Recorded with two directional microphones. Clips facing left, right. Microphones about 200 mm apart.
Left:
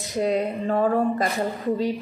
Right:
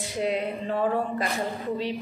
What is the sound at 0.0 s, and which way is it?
Speech, 45° left (ahead or behind).